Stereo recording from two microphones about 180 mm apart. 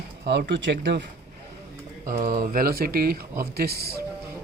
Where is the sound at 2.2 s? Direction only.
55° right (ahead or behind).